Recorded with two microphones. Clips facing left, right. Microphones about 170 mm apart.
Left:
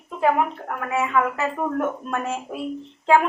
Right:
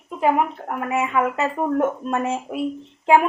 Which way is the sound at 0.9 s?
20° right (ahead or behind).